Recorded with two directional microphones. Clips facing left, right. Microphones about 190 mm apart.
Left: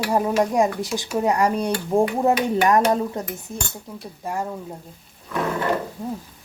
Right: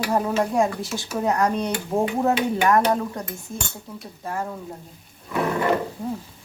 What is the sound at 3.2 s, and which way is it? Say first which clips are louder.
Cutlery: left 3 dB; 25° left (ahead or behind).